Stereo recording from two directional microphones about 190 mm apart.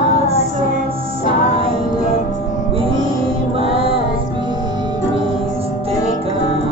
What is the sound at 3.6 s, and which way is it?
Music, 30° right (ahead or behind).